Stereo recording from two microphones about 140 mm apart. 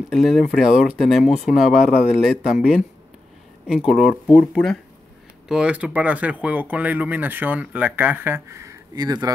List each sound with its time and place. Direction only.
0.1 s speech: centre (ahead or behind); by 9.3 s 30° right (ahead or behind)